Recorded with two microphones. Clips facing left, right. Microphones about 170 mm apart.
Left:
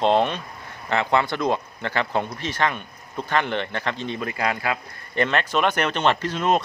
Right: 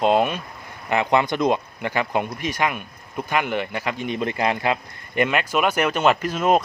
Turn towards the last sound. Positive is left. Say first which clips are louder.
# right 3 dB
turn(degrees=-10)  # may be behind; listen again after turning